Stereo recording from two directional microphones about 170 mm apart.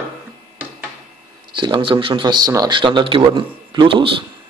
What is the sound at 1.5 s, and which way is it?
Speech, 30° right (ahead or behind).